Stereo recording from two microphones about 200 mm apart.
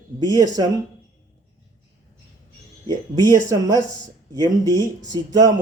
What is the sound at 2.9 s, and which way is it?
Speech, 20° right (ahead or behind).